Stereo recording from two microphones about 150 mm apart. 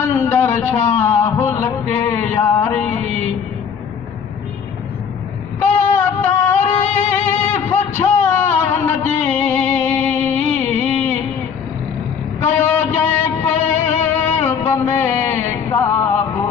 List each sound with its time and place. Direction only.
0.1 s speech: 15° left (ahead or behind)
5.6 s music: 10° left (ahead or behind)
12.4 s a sound: 15° left (ahead or behind)
13.7 s music: 15° left (ahead or behind)